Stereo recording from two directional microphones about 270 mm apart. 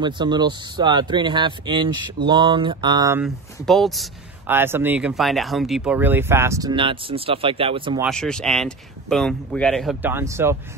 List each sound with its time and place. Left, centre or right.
0.0 s speech: centre
8.0 s speech: centre